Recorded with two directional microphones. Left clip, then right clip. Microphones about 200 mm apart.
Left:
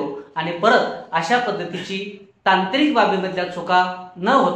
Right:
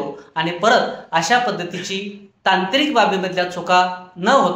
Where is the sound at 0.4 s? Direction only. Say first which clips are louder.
Right 1 dB; 35° right (ahead or behind).